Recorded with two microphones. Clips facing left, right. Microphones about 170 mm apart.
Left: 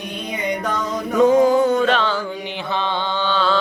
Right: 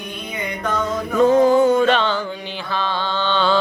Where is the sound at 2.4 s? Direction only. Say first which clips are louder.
Left 1 dB; 20° left (ahead or behind); by 3.5 s 5° left (ahead or behind).